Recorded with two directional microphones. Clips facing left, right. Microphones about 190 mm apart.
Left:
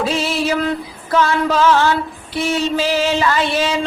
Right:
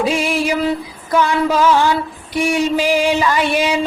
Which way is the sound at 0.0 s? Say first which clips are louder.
Right 2 dB; 15° right (ahead or behind).